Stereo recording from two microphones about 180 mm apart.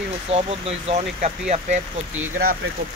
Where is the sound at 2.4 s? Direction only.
60° right (ahead or behind).